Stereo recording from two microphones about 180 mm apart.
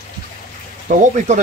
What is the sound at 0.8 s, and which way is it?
Speech, 45° right (ahead or behind).